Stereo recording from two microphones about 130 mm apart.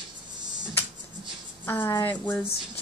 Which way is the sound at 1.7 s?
20° left (ahead or behind).